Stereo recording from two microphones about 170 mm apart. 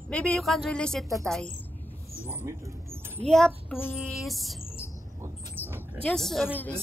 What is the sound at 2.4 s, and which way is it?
Rodents, 15° right (ahead or behind).